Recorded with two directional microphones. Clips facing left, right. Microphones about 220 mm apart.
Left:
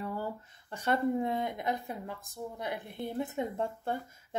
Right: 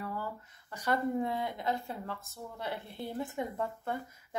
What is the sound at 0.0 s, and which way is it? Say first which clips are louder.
Speech: left 3 dB; 25° left (ahead or behind).